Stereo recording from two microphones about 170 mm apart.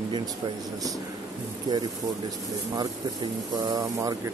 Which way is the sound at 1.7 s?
25° right (ahead or behind).